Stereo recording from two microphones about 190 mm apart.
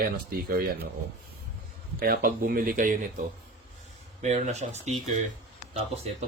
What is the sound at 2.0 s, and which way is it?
Speech, 50° right (ahead or behind).